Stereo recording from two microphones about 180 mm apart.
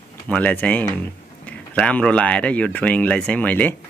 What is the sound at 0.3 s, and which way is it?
Speech, 10° left (ahead or behind).